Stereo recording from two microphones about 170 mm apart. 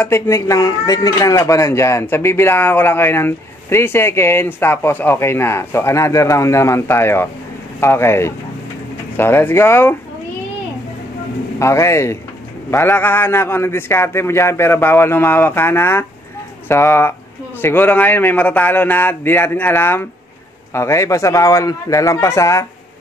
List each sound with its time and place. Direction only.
0.0 s speech: 15° left (ahead or behind)
11.6 s speech: 15° left (ahead or behind)